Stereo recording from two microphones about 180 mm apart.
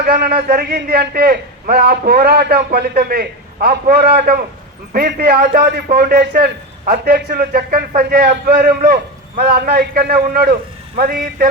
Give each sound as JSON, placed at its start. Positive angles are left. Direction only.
{"t": 0.0, "sound": "a man's voice", "side_deg": -55}